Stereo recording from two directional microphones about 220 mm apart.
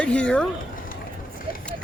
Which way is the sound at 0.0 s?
5° left (ahead or behind).